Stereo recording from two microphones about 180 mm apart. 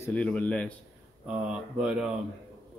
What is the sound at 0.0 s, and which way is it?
Speech, 5° left (ahead or behind).